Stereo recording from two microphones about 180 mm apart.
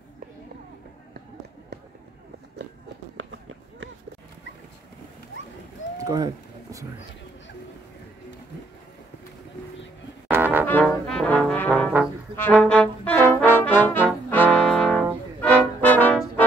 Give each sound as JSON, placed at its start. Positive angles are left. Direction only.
{"t": 5.9, "sound": "a sound", "side_deg": -20}
{"t": 10.3, "sound": "brass instrument", "side_deg": -10}
{"t": 10.8, "sound": "trombone", "side_deg": 0}
{"t": 12.4, "sound": "brass instrument", "side_deg": 10}
{"t": 14.3, "sound": "music", "side_deg": 5}
{"t": 15.4, "sound": "brass instrument", "side_deg": 10}